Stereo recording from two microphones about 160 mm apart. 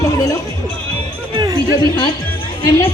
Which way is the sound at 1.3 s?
25° right (ahead or behind).